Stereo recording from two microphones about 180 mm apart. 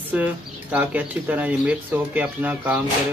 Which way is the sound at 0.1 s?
10° right (ahead or behind).